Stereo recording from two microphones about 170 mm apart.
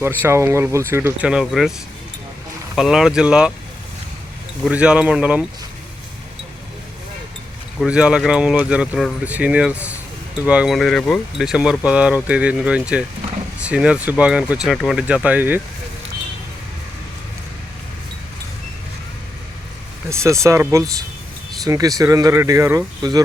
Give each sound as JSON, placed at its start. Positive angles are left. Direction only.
{"t": 0.0, "sound": "speech", "side_deg": -15}
{"t": 2.7, "sound": "speech", "side_deg": -5}
{"t": 4.6, "sound": "speech", "side_deg": -5}
{"t": 7.8, "sound": "speech", "side_deg": -5}
{"t": 20.1, "sound": "speech", "side_deg": -15}